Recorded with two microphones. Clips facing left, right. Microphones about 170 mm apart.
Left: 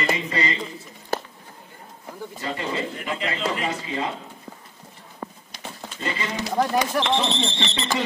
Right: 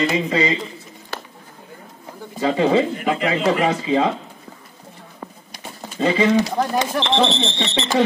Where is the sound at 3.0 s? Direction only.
65° right (ahead or behind); by 4.2 s 90° right.